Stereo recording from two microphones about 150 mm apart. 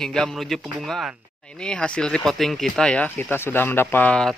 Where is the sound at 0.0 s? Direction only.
5° left (ahead or behind).